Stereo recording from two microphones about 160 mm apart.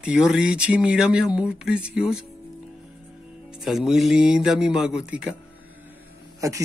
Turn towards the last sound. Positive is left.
turn(degrees=-20)  # may be behind; listen again after turning